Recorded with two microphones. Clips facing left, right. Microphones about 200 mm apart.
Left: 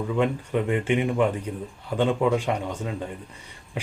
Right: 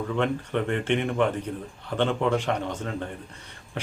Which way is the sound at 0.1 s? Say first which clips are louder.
Left 2 dB; 10° left (ahead or behind).